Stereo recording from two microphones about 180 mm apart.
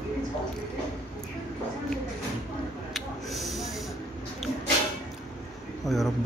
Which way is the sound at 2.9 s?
Centre (ahead or behind).